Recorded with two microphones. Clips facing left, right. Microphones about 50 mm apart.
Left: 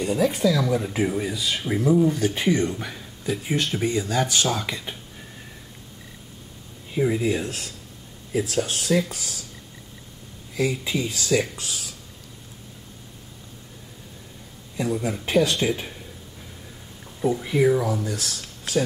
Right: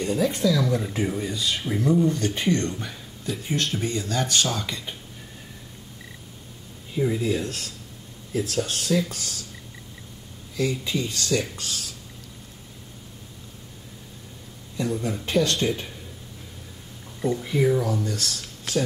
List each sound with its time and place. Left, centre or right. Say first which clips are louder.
0.0 s speech: left 2 dB; centre
6.9 s speech: left 2 dB; centre
10.5 s speech: left 1 dB; centre
14.8 s speech: left 1 dB; centre
17.2 s speech: left 2 dB; centre